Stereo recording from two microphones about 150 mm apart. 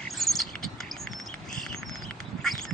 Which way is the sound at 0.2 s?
Centre (ahead or behind).